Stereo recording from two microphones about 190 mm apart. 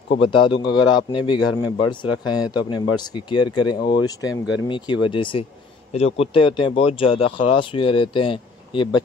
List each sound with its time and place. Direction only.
0.2 s a man's voice: 25° left (ahead or behind)